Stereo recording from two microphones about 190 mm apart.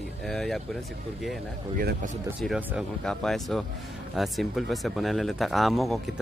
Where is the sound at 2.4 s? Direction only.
Centre (ahead or behind).